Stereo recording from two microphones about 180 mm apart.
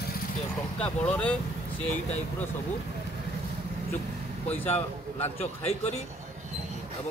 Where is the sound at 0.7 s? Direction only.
5° left (ahead or behind).